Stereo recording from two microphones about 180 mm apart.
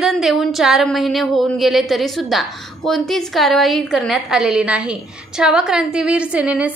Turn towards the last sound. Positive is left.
turn(degrees=-5)  # may be behind; listen again after turning